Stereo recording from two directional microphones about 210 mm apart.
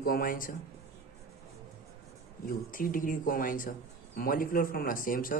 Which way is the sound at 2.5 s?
40° left (ahead or behind).